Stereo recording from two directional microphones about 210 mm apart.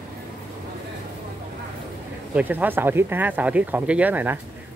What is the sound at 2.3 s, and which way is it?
Speech, 5° right (ahead or behind).